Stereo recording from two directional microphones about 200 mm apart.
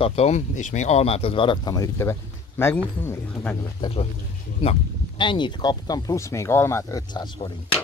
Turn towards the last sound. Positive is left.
turn(degrees=20)  # may be behind; listen again after turning